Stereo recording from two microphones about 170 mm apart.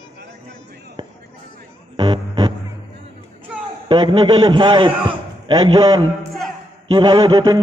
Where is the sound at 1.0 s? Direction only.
25° right (ahead or behind).